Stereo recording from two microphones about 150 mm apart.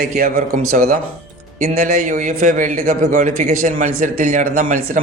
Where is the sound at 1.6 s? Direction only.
60° right (ahead or behind).